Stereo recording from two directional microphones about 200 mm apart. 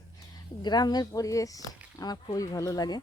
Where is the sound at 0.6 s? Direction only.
20° left (ahead or behind).